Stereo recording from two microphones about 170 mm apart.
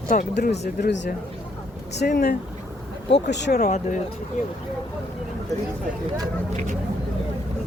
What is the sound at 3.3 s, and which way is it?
Speech, 85° left.